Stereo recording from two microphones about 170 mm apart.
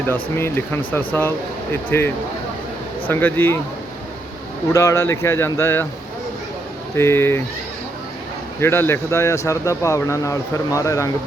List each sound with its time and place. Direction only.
0.1 s a man's voice: 15° left (ahead or behind)
4.7 s a man's voice: 15° left (ahead or behind)
6.9 s a man's voice: 15° left (ahead or behind)
8.6 s a man's voice: 15° left (ahead or behind)